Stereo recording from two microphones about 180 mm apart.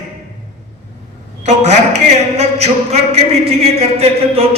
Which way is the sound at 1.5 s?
40° right (ahead or behind).